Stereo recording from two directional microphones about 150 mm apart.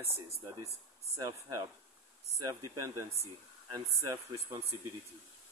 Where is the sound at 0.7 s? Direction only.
20° right (ahead or behind).